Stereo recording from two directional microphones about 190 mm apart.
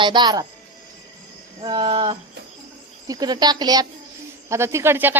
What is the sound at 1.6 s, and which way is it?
A woman's voice, 25° right (ahead or behind).